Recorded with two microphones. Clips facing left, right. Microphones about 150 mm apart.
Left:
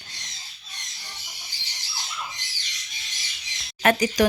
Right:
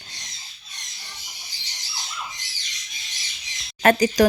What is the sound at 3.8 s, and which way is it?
Speech, 40° right (ahead or behind).